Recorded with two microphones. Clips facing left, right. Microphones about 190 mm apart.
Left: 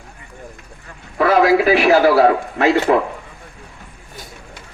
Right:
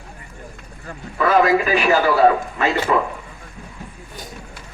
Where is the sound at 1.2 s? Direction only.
75° left (ahead or behind).